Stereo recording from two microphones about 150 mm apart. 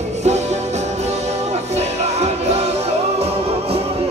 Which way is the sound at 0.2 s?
50° right (ahead or behind).